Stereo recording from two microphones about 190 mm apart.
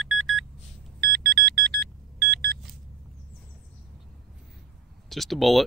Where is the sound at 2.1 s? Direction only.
55° right (ahead or behind).